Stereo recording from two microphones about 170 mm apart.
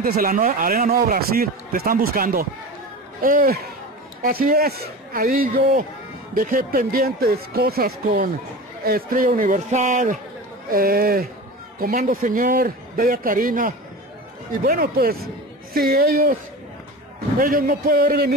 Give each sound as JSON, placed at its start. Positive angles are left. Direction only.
{"t": 0.0, "sound": "a man's voice", "side_deg": -60}
{"t": 10.7, "sound": "speech", "side_deg": -60}
{"t": 17.4, "sound": "speech", "side_deg": -55}